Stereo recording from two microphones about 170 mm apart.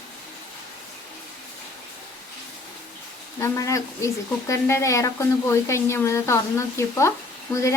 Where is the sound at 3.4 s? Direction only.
15° left (ahead or behind).